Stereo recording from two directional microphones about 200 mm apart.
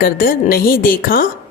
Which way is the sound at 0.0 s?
45° left (ahead or behind).